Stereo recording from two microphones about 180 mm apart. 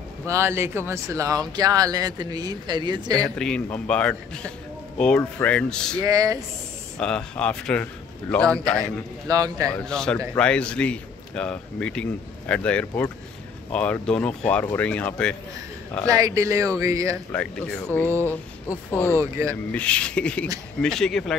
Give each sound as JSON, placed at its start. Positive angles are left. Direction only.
{"t": 0.3, "sound": "speech", "side_deg": -15}
{"t": 3.2, "sound": "a man's voice", "side_deg": 5}
{"t": 6.0, "sound": "speech", "side_deg": -20}
{"t": 7.0, "sound": "a man's voice", "side_deg": 5}
{"t": 9.3, "sound": "speech", "side_deg": -20}
{"t": 9.8, "sound": "a man's voice", "side_deg": 5}
{"t": 16.1, "sound": "speech", "side_deg": -20}
{"t": 17.3, "sound": "speech", "side_deg": 5}
{"t": 19.1, "sound": "speech", "side_deg": -15}
{"t": 19.7, "sound": "a man's voice", "side_deg": 5}